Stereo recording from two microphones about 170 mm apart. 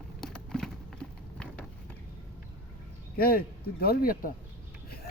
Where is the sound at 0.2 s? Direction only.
5° left (ahead or behind).